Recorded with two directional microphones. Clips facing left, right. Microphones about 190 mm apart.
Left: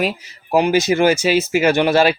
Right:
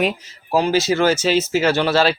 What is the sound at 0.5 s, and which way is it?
Speech, 15° left (ahead or behind).